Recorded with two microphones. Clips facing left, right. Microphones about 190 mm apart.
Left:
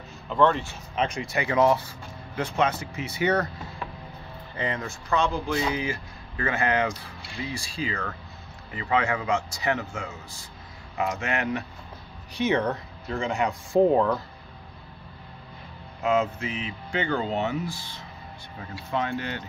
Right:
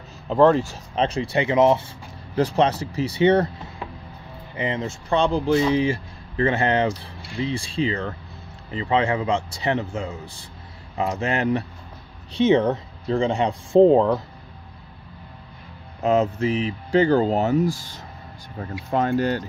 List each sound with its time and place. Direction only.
0.3 s speech: 40° right (ahead or behind); by 1.9 s 20° right (ahead or behind)
2.3 s speech: 35° right (ahead or behind)
16.0 s speech: 35° right (ahead or behind)